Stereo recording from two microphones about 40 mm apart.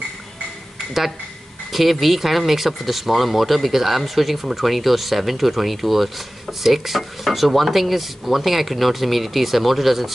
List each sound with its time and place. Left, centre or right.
1.7 s speech: centre